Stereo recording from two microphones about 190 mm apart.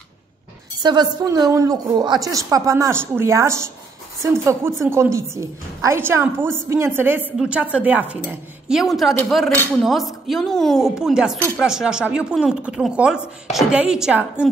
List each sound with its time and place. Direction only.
0.8 s a woman's voice: 25° right (ahead or behind); by 14.5 s 5° right (ahead or behind)